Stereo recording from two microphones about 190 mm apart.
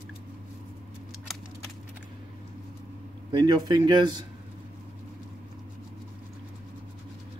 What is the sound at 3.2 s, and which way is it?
Speech, 25° right (ahead or behind).